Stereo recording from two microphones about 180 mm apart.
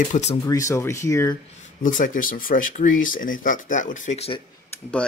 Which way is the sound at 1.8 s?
45° left (ahead or behind).